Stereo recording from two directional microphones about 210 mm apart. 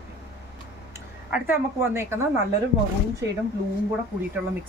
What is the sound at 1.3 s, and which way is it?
Speech, 10° right (ahead or behind).